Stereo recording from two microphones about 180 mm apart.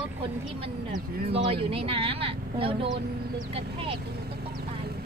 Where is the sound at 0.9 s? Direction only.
30° right (ahead or behind).